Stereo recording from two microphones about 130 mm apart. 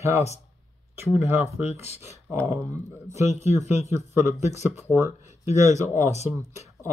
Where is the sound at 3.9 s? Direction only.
20° right (ahead or behind).